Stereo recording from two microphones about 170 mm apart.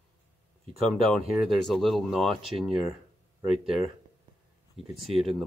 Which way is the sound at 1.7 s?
Centre (ahead or behind).